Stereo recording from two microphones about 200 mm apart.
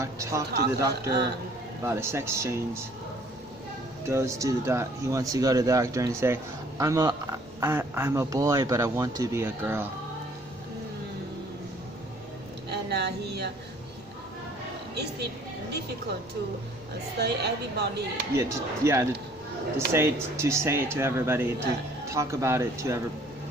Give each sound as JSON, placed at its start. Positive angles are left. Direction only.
{"t": 0.0, "sound": "speech", "side_deg": -15}
{"t": 4.1, "sound": "speech", "side_deg": -15}
{"t": 12.6, "sound": "a sound", "side_deg": -55}
{"t": 17.2, "sound": "speech", "side_deg": -55}
{"t": 18.3, "sound": "speech", "side_deg": -15}